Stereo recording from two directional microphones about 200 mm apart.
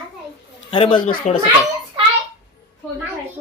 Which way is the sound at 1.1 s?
45° left (ahead or behind).